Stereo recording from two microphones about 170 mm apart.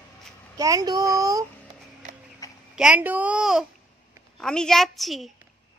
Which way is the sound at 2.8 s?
10° right (ahead or behind).